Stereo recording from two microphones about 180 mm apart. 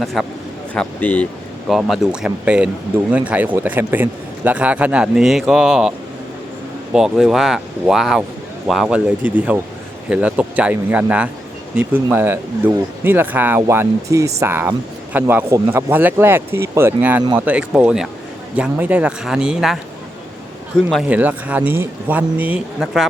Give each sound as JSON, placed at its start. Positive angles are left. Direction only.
{"t": 0.0, "sound": "speech", "side_deg": 0}
{"t": 6.9, "sound": "speech", "side_deg": -5}
{"t": 20.9, "sound": "speech", "side_deg": -5}